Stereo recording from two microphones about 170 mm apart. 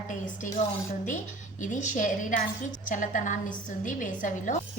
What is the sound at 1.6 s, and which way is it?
A woman's voice, 45° left (ahead or behind).